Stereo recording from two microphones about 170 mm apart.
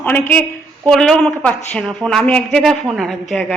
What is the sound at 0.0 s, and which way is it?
A woman's voice, 10° left (ahead or behind).